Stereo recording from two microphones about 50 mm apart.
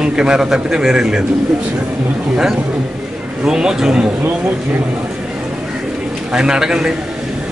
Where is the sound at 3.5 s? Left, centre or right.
Centre.